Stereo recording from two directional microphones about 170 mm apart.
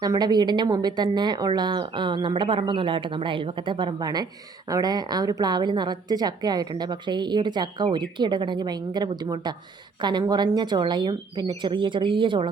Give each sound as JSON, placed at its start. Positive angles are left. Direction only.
{"t": 0.0, "sound": "a woman's voice", "side_deg": -25}